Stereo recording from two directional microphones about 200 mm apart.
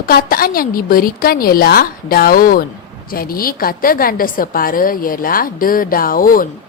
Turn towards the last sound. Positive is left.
turn(degrees=45)  # may be behind; listen again after turning